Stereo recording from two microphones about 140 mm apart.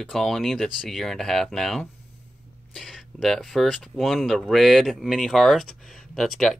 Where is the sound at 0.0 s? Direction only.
Centre (ahead or behind).